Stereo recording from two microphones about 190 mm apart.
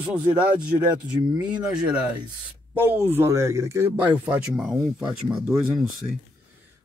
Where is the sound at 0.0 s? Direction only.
10° right (ahead or behind).